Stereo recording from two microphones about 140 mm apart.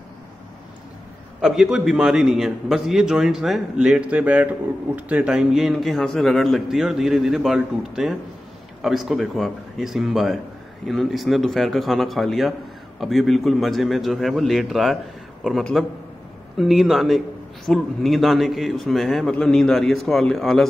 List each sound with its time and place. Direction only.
1.4 s a man's voice: 5° right (ahead or behind)